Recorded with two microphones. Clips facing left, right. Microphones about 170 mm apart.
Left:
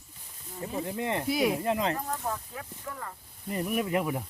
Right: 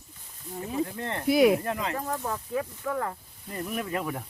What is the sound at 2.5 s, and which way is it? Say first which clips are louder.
Speech: right 10 dB; 90° right.